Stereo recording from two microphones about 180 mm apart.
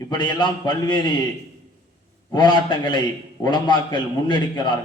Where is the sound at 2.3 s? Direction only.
25° left (ahead or behind).